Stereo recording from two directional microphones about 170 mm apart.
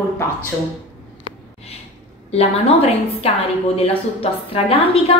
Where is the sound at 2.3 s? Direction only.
35° left (ahead or behind).